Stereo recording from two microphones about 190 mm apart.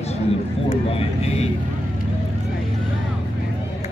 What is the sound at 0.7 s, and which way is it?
Speech, 30° left (ahead or behind).